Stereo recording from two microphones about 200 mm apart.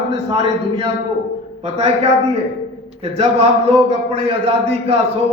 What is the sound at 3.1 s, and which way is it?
A man's voice, 30° right (ahead or behind).